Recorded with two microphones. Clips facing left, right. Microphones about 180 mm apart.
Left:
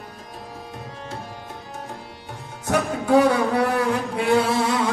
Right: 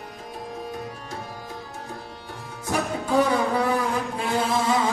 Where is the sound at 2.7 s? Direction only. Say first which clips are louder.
Left 5 dB; 70° left (ahead or behind).